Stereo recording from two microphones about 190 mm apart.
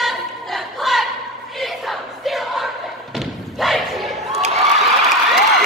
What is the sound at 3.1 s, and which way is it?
Thump, centre (ahead or behind).